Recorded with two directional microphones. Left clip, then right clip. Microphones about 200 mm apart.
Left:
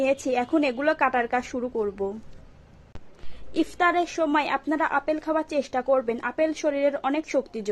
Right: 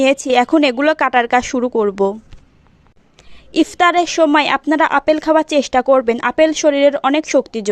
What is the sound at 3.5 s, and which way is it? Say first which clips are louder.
A woman's voice: right 10 dB; 40° right (ahead or behind).